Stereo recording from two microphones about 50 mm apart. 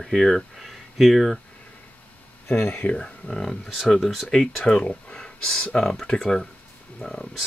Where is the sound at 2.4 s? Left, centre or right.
Left.